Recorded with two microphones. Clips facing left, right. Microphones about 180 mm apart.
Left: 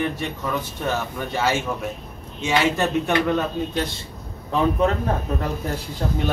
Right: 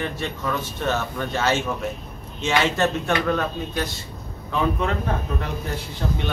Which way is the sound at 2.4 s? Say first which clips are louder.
Even; 15° left (ahead or behind).